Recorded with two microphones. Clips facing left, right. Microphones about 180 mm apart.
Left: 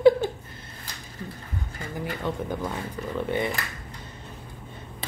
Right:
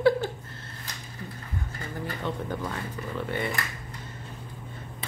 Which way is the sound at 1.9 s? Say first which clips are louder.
Left 3 dB; 10° left (ahead or behind).